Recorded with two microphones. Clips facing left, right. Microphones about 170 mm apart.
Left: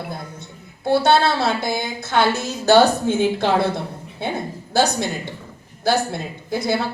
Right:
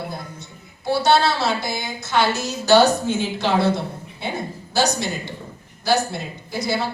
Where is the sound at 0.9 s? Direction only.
55° left (ahead or behind).